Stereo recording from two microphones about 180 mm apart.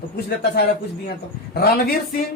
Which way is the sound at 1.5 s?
55° left (ahead or behind).